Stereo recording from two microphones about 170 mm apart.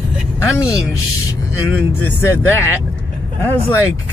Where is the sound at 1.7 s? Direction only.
15° left (ahead or behind).